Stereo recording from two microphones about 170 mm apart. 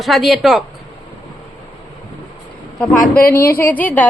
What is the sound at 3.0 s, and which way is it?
Speech, 60° left (ahead or behind).